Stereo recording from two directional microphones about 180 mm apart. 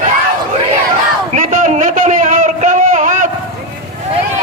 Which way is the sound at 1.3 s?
45° right (ahead or behind).